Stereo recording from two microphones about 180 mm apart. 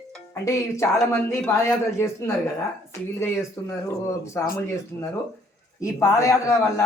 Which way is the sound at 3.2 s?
15° left (ahead or behind).